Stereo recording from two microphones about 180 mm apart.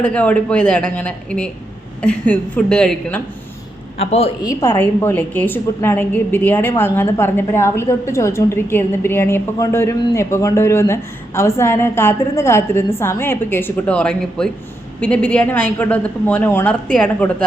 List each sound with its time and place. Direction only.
0.0 s a woman's voice: 5° left (ahead or behind)
3.9 s a man's voice: 35° left (ahead or behind)
4.4 s a woman's voice: 15° left (ahead or behind)